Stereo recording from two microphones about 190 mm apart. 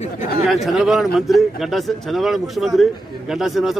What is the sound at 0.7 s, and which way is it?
Speech, centre (ahead or behind).